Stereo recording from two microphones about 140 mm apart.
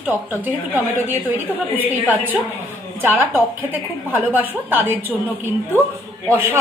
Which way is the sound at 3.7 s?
10° right (ahead or behind).